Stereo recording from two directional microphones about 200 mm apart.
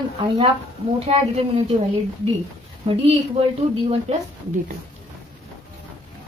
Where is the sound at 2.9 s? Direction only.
30° right (ahead or behind).